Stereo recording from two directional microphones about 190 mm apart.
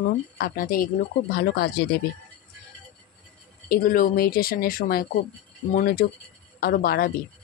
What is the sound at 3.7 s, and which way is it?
A woman's voice, 50° left (ahead or behind).